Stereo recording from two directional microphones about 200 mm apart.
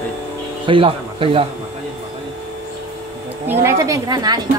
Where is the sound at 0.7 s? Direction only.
25° right (ahead or behind).